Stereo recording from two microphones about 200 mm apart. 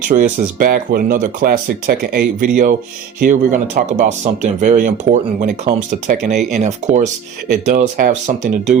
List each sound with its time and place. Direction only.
0.1 s speech: 45° right (ahead or behind)